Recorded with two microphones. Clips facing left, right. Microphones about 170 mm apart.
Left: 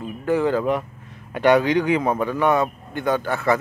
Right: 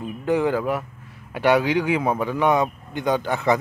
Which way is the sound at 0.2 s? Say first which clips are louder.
Left 1 dB; 15° right (ahead or behind).